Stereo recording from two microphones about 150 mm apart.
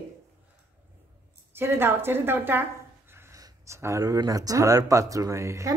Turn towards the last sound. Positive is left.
turn(degrees=-20)  # may be behind; listen again after turning